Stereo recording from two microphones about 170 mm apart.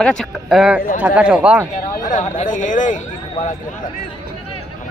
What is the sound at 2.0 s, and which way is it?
Speech, 45° left (ahead or behind).